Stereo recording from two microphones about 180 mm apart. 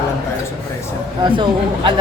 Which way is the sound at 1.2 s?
25° right (ahead or behind).